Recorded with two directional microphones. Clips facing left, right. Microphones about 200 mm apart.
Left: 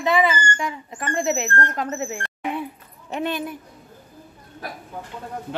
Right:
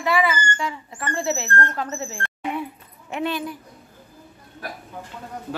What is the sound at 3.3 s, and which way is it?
Speech, 20° left (ahead or behind).